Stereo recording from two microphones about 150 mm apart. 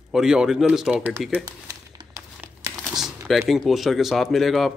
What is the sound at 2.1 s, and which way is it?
Crumpling, 20° right (ahead or behind).